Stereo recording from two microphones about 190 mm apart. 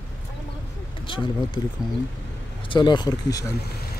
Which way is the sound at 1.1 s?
25° left (ahead or behind).